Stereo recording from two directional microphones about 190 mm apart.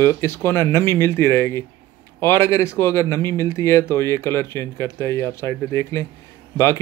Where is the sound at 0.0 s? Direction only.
15° left (ahead or behind).